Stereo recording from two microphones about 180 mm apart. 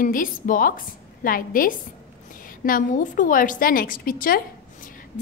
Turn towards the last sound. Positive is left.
turn(degrees=55)  # may be behind; listen again after turning